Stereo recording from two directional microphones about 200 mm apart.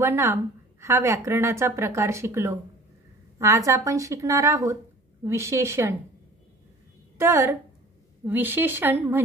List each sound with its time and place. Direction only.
0.0 s a woman's voice: 15° right (ahead or behind)
7.2 s a woman's voice: 15° right (ahead or behind)